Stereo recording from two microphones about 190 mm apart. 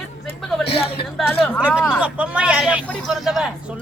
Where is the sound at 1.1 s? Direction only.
5° left (ahead or behind).